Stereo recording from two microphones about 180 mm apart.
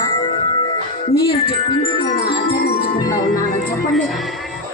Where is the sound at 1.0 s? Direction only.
30° left (ahead or behind).